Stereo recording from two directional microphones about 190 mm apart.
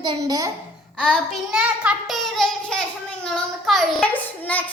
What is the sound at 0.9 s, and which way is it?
A child's voice, 5° left (ahead or behind).